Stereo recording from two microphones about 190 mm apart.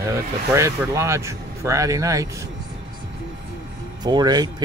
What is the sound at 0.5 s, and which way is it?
Speech, 15° right (ahead or behind).